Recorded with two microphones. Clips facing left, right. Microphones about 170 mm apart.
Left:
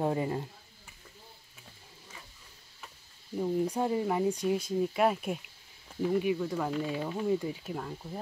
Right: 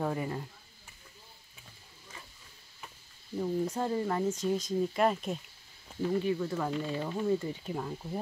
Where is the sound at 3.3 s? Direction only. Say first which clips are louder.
Left 2 dB; 10° left (ahead or behind).